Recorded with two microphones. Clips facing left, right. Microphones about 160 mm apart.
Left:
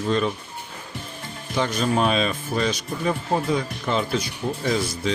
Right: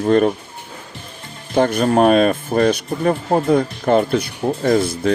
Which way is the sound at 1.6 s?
55° right (ahead or behind).